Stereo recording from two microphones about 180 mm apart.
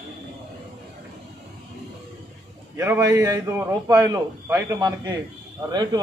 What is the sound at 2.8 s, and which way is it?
A man's voice, 15° right (ahead or behind).